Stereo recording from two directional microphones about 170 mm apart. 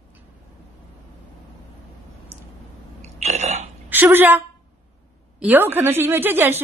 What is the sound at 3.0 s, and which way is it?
Burping, 40° right (ahead or behind).